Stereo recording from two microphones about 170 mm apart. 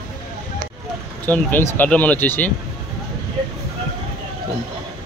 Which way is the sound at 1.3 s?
10° left (ahead or behind).